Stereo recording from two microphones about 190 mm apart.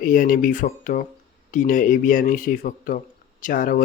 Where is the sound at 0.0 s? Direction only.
45° left (ahead or behind).